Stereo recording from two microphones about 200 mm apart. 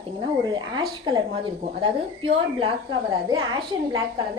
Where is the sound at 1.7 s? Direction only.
25° right (ahead or behind).